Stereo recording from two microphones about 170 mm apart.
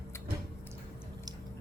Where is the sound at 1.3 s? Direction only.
25° right (ahead or behind).